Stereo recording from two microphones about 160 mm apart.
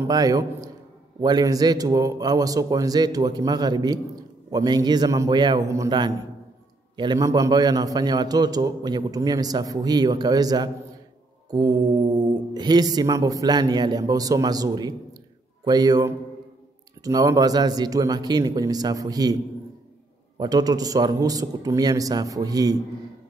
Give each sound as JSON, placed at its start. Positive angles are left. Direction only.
{"t": 0.0, "sound": "a man's voice", "side_deg": -20}
{"t": 20.3, "sound": "a man's voice", "side_deg": -25}